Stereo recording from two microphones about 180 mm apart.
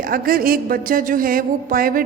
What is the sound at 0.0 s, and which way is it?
A woman's voice, 55° right (ahead or behind).